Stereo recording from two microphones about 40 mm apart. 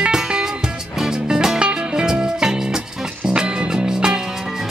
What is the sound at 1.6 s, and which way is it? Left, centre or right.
Music, right.